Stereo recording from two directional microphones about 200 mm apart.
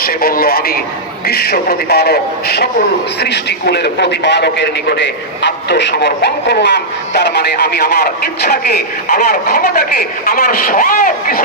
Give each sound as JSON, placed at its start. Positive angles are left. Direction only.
{"t": 0.0, "sound": "radio", "side_deg": 45}
{"t": 1.3, "sound": "a man's voice", "side_deg": 50}